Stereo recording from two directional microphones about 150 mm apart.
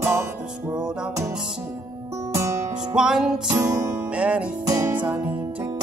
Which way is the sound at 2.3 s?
20° right (ahead or behind).